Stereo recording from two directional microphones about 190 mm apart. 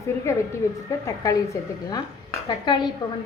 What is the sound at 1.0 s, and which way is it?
A woman's voice, 15° left (ahead or behind).